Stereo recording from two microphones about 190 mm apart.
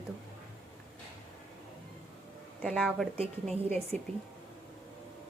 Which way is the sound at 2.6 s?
5° left (ahead or behind).